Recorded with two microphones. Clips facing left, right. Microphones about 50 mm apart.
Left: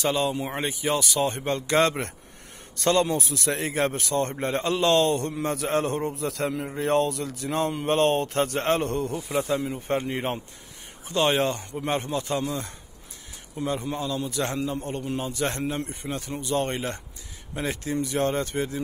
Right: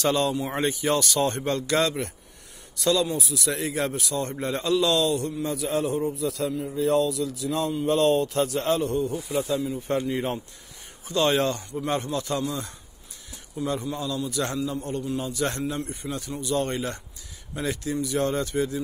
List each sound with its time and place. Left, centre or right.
0.0 s speech: centre
1.4 s speech: left
1.9 s a man's voice: left
5.3 s a man's voice: left
9.3 s a man's voice: left